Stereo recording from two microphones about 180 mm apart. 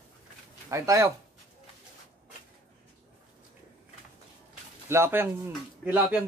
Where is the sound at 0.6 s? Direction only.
15° right (ahead or behind).